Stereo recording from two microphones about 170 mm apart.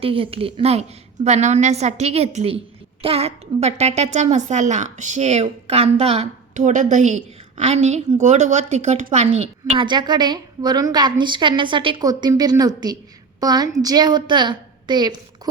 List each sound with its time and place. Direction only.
0.0 s a woman's voice: 35° right (ahead or behind)
9.8 s a woman's voice: 25° right (ahead or behind)